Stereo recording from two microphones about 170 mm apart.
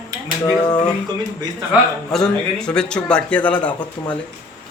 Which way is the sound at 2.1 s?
5° left (ahead or behind).